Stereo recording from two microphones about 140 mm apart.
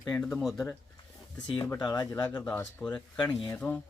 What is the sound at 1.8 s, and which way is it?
Speech, 25° left (ahead or behind).